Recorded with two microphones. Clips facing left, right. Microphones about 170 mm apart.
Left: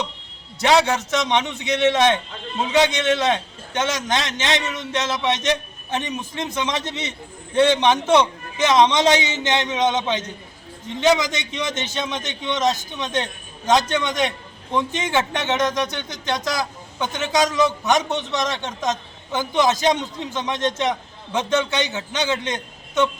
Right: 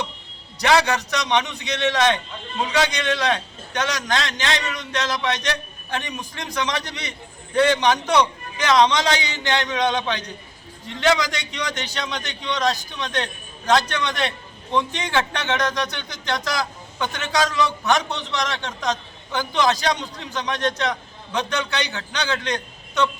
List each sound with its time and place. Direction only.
0.6 s a man's voice: 20° left (ahead or behind)